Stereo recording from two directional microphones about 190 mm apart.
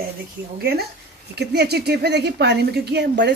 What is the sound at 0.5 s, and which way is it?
A woman's voice, 55° right (ahead or behind).